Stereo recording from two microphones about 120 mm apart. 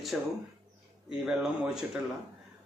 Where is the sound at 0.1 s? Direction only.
5° right (ahead or behind).